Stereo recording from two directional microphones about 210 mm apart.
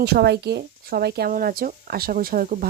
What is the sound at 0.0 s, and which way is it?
Speech, 50° right (ahead or behind).